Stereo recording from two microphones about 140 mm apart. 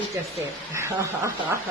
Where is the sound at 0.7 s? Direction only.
20° right (ahead or behind).